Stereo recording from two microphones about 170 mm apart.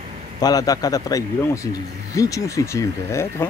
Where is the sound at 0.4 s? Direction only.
20° left (ahead or behind).